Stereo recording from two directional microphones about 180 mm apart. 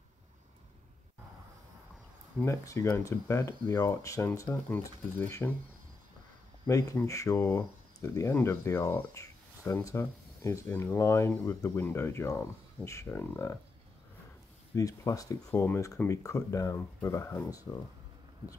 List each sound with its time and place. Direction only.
2.3 s speech: 15° left (ahead or behind)
6.7 s speech: 20° left (ahead or behind)
14.8 s speech: 20° left (ahead or behind)